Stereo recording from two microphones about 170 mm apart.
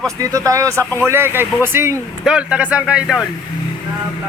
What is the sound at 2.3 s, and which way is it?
Speech, 5° right (ahead or behind).